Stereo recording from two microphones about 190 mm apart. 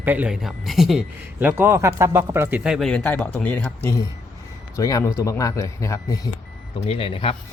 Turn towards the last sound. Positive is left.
turn(degrees=30)  # may be behind; listen again after turning